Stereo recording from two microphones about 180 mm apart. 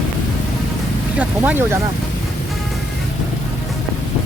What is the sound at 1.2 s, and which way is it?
Speech, 10° right (ahead or behind).